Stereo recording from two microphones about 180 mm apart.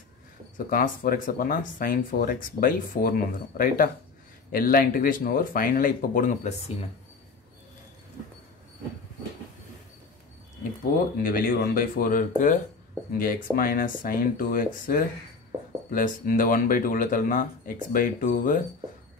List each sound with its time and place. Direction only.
0.7 s speech: 50° left (ahead or behind)
10.9 s speech: 50° left (ahead or behind)